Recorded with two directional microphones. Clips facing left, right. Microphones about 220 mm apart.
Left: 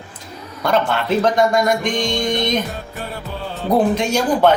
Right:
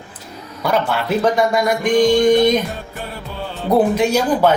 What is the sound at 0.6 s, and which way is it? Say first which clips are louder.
Speech: even; 10° right (ahead or behind).